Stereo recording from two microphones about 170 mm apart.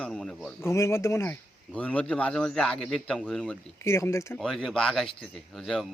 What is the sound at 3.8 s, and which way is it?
Speech, 15° left (ahead or behind).